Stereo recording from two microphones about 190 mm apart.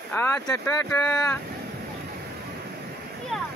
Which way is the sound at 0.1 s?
10° left (ahead or behind).